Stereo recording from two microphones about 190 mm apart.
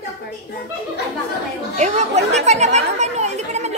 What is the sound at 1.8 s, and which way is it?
Chatter, 35° right (ahead or behind).